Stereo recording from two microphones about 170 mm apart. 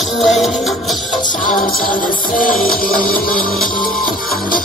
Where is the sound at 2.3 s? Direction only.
55° left (ahead or behind).